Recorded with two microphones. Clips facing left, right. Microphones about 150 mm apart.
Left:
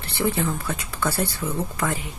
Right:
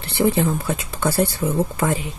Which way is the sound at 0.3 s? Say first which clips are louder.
Right 5 dB; 20° right (ahead or behind).